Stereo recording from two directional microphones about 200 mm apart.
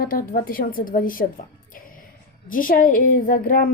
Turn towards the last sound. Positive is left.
turn(degrees=45)  # may be behind; listen again after turning